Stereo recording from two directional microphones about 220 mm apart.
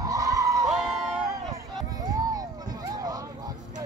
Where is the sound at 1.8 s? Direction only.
15° right (ahead or behind).